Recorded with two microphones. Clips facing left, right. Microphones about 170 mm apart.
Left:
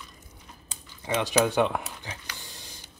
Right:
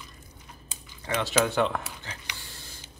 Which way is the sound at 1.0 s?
15° left (ahead or behind).